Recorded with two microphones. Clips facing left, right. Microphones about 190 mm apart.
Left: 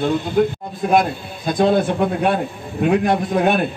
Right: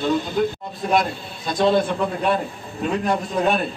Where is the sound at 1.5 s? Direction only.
50° left (ahead or behind).